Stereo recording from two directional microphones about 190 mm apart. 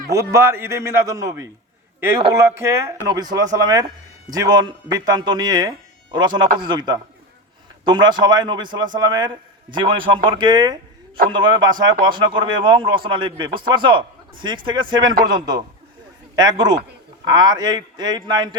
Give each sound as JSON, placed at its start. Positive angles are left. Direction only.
{"t": 0.1, "sound": "a man's voice", "side_deg": -15}